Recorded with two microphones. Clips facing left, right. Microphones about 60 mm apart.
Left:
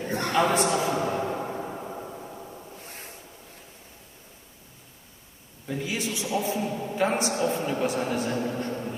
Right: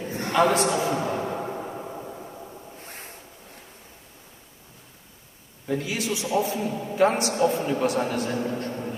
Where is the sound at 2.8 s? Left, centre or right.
Right.